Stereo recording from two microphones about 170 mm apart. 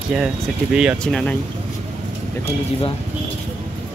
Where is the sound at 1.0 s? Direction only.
5° left (ahead or behind).